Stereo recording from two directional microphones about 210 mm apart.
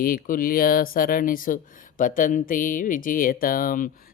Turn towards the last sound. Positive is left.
turn(degrees=40)  # may be behind; listen again after turning